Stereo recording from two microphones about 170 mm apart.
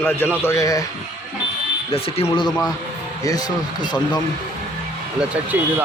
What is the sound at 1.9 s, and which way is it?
Speech, 35° left (ahead or behind).